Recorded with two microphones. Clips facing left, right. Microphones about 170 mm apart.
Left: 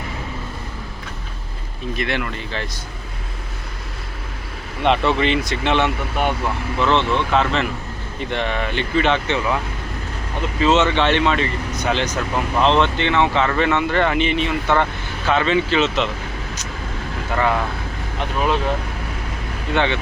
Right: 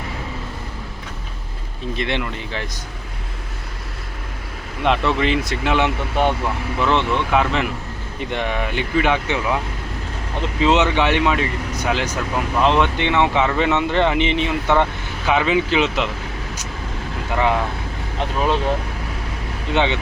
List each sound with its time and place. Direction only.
2.0 s speech: 20° right (ahead or behind)
4.8 s speech: centre (ahead or behind)
10.6 s speech: 15° right (ahead or behind)
17.3 s speech: 15° right (ahead or behind)
19.7 s speech: 15° right (ahead or behind)